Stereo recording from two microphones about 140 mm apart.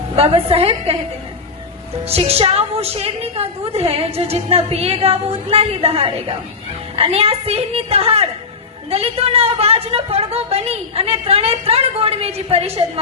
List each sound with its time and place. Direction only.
0.2 s a woman's voice: 45° right (ahead or behind)
2.0 s a woman's voice: 45° right (ahead or behind)